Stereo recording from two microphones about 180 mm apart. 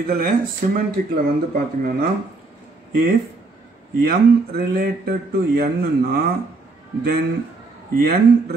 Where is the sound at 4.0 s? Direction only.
60° right (ahead or behind).